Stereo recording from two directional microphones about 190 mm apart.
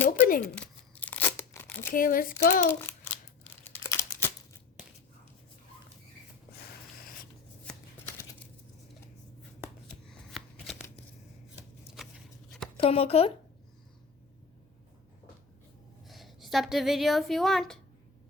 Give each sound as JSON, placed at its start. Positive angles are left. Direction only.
{"t": 0.1, "sound": "a sound", "side_deg": 50}
{"t": 0.5, "sound": "tearing", "side_deg": 10}
{"t": 1.9, "sound": "speech", "side_deg": 45}
{"t": 2.9, "sound": "a sound", "side_deg": 10}
{"t": 3.8, "sound": "crumpling", "side_deg": 15}
{"t": 10.1, "sound": "shuffling cards", "side_deg": 0}
{"t": 11.5, "sound": "chopping", "side_deg": -5}
{"t": 12.7, "sound": "speech", "side_deg": 30}
{"t": 16.0, "sound": "a woman's voice", "side_deg": 0}